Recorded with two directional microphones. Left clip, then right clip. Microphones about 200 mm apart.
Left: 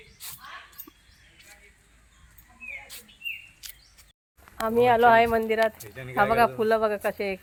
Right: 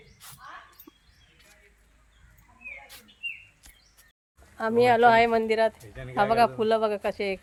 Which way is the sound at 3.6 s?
15° right (ahead or behind).